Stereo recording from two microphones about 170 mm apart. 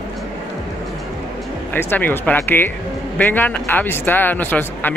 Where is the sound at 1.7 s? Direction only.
10° left (ahead or behind).